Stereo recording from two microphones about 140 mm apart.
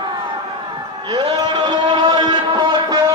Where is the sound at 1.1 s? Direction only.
35° right (ahead or behind).